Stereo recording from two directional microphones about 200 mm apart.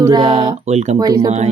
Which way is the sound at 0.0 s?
20° right (ahead or behind).